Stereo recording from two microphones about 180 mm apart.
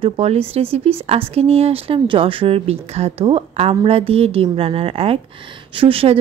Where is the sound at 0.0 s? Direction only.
35° right (ahead or behind).